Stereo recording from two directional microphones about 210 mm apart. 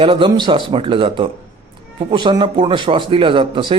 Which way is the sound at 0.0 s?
25° right (ahead or behind).